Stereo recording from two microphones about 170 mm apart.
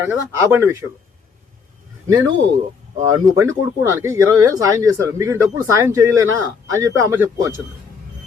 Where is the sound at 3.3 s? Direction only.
15° right (ahead or behind).